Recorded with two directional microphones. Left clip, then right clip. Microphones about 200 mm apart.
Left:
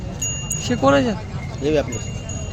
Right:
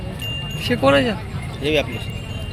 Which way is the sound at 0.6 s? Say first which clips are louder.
Right 1 dB; 20° left (ahead or behind).